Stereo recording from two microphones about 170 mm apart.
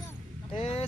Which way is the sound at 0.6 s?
35° left (ahead or behind).